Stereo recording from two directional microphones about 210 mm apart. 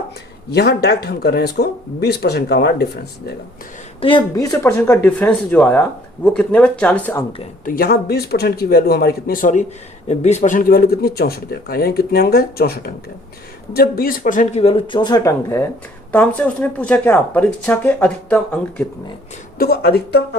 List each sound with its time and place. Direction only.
0.5 s speech: 50° left (ahead or behind)
4.0 s a woman's voice: 20° left (ahead or behind)
7.6 s speech: 40° left (ahead or behind); by 18.9 s 5° left (ahead or behind)
19.5 s speech: 45° left (ahead or behind)